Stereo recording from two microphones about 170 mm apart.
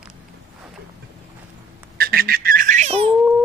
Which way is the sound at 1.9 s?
60° right (ahead or behind).